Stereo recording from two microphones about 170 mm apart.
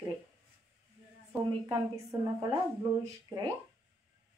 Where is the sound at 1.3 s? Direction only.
15° right (ahead or behind).